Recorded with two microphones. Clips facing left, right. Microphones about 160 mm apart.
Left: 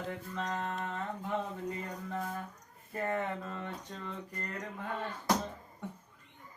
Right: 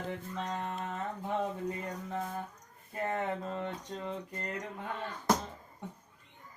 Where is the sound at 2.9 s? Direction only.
20° right (ahead or behind).